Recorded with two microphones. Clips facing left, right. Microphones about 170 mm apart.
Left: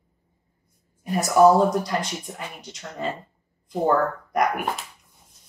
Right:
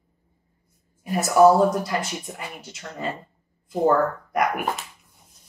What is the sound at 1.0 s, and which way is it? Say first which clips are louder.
Speech: right 1 dB; centre (ahead or behind).